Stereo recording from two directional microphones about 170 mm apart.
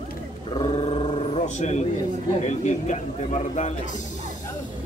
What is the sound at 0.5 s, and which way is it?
A man's voice, 35° left (ahead or behind).